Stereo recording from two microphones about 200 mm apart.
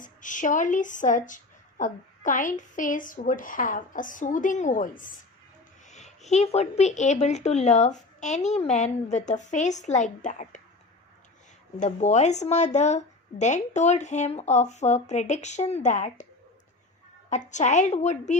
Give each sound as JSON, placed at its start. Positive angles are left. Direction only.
{"t": 0.0, "sound": "a woman's voice", "side_deg": 40}
{"t": 11.8, "sound": "a woman's voice", "side_deg": 40}
{"t": 17.2, "sound": "a woman's voice", "side_deg": 35}